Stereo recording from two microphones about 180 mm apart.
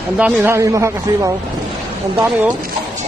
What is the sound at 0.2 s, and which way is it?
Speech, 10° right (ahead or behind).